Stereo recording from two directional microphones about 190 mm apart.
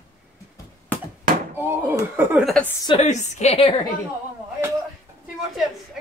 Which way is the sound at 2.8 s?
30° left (ahead or behind).